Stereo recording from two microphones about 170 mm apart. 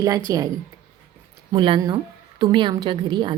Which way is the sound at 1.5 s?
30° right (ahead or behind).